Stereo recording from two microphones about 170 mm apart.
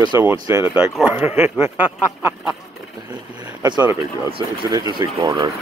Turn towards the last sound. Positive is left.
turn(degrees=-25)  # may be behind; listen again after turning